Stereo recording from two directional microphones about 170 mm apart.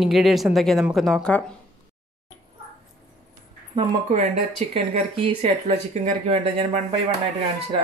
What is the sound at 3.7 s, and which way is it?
Speech, 40° right (ahead or behind).